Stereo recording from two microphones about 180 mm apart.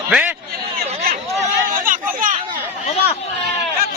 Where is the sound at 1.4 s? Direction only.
50° right (ahead or behind).